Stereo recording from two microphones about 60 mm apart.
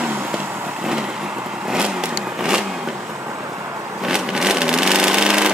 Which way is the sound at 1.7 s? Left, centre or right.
Centre.